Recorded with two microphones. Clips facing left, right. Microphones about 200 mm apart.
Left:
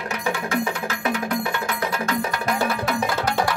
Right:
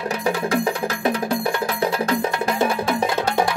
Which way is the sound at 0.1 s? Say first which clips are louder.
Right 3 dB; 35° right (ahead or behind).